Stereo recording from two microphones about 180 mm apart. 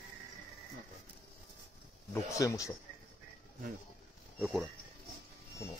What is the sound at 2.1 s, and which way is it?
Speech, 15° left (ahead or behind).